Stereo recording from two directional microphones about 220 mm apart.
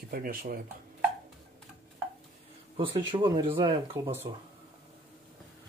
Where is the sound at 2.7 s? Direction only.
20° right (ahead or behind).